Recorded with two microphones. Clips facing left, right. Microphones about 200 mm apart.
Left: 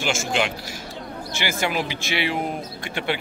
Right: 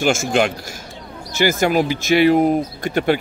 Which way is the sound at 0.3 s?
45° right (ahead or behind).